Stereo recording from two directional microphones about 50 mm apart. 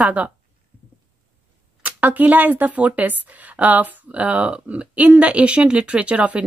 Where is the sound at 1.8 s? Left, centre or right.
Right.